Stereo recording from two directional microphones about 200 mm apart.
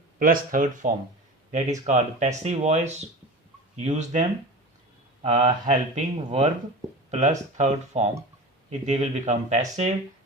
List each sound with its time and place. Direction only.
0.2 s speech: 45° right (ahead or behind)